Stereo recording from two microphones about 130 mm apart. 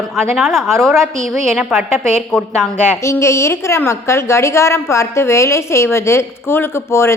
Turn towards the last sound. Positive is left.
turn(degrees=20)  # may be behind; listen again after turning